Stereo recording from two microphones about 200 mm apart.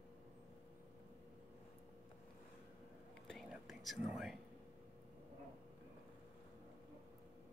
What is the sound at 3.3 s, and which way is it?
Whispering, centre (ahead or behind).